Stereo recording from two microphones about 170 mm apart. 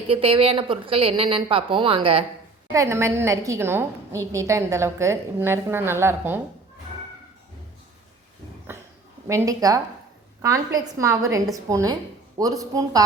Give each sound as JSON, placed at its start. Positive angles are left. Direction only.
{"t": 0.1, "sound": "a woman's voice", "side_deg": -35}
{"t": 2.7, "sound": "a woman's voice", "side_deg": -15}
{"t": 9.2, "sound": "a woman's voice", "side_deg": -15}